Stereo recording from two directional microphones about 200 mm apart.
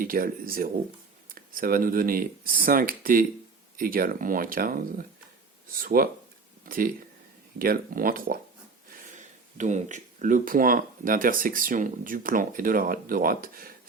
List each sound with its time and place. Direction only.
0.0 s speech: 45° right (ahead or behind)